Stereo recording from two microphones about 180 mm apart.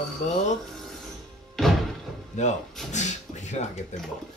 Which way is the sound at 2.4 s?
40° left (ahead or behind).